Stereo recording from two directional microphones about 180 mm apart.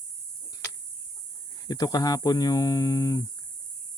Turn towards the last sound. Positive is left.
turn(degrees=20)  # may be behind; listen again after turning